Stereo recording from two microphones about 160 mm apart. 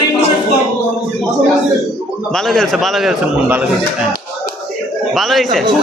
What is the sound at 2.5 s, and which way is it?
Speech, centre (ahead or behind).